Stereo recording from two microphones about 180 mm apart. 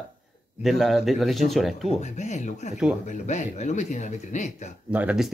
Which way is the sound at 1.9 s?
40° left (ahead or behind).